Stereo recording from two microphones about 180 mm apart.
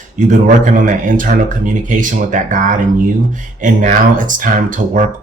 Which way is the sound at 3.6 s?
45° right (ahead or behind).